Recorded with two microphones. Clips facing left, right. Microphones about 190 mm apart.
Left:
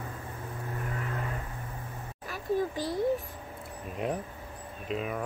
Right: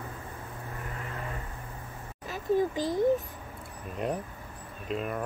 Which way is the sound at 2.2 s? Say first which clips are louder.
Right 3 dB; 20° right (ahead or behind).